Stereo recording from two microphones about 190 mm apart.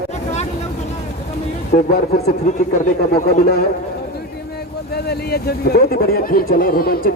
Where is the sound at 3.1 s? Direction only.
55° left (ahead or behind).